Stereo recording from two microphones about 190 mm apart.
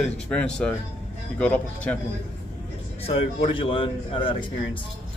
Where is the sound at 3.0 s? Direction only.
30° left (ahead or behind).